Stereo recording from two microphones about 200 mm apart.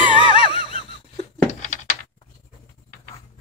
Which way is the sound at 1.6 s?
35° left (ahead or behind).